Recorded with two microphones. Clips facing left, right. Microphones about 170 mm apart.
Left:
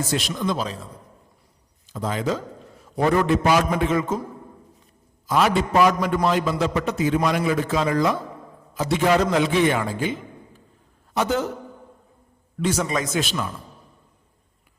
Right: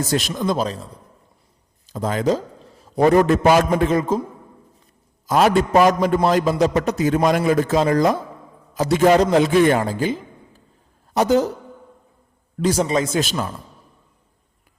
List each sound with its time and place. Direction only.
0.1 s a man's voice: 40° right (ahead or behind)
1.9 s a man's voice: 45° right (ahead or behind)
5.2 s a man's voice: 45° right (ahead or behind)
12.5 s a man's voice: 35° right (ahead or behind)